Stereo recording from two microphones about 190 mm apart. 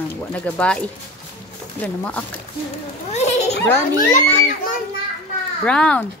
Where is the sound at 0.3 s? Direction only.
5° left (ahead or behind).